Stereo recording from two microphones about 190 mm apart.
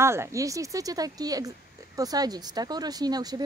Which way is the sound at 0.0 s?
15° right (ahead or behind).